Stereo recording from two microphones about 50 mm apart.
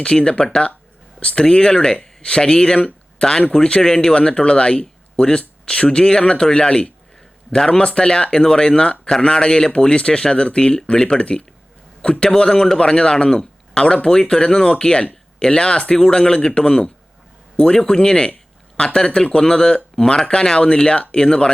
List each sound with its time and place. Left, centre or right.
0.0 s a man's voice: centre